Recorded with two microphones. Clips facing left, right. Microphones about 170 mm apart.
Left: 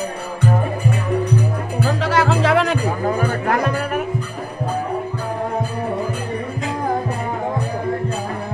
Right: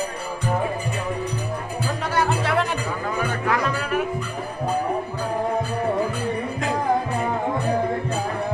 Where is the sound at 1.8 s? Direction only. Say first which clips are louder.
Left 6 dB; 90° left.